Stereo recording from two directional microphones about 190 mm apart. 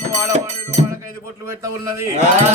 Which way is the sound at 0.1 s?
35° right (ahead or behind).